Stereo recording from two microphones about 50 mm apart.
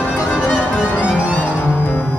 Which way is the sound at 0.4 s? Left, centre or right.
Left.